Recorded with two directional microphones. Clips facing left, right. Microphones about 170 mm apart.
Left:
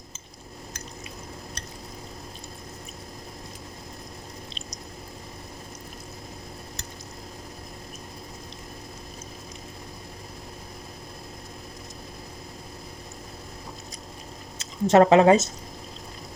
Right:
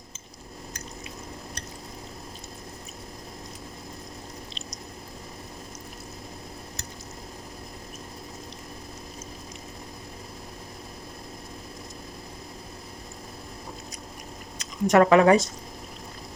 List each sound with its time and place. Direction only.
14.6 s speech: 25° left (ahead or behind)